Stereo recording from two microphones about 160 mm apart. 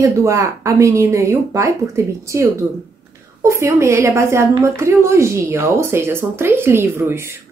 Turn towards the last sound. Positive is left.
turn(degrees=-15)  # may be behind; listen again after turning